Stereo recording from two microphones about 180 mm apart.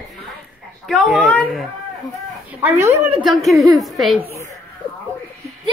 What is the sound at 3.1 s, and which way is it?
A child's voice, centre (ahead or behind).